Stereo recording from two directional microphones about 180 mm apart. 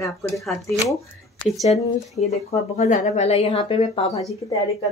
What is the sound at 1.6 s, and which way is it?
Speech, 40° left (ahead or behind).